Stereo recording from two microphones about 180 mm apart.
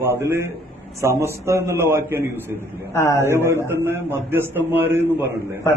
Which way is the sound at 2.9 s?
15° left (ahead or behind).